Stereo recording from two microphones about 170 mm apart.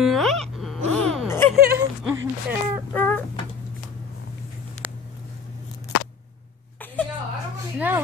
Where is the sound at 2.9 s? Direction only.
10° left (ahead or behind).